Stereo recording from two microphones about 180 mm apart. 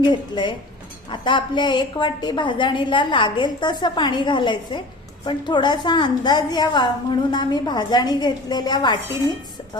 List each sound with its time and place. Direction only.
0.0 s a woman's voice: 25° left (ahead or behind)